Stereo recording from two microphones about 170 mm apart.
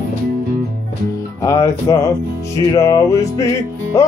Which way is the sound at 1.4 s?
20° left (ahead or behind).